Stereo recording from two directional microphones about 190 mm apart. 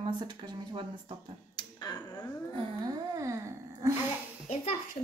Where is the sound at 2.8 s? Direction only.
15° right (ahead or behind).